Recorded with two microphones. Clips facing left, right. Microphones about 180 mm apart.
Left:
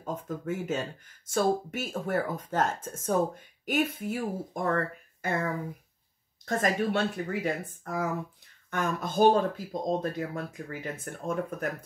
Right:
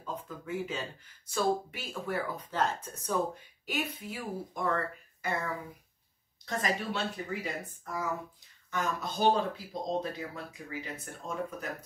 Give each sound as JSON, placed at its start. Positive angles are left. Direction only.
{"t": 0.0, "sound": "speech", "side_deg": 45}